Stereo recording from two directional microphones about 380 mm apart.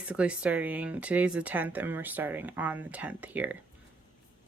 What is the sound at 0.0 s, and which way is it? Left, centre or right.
Speech, centre.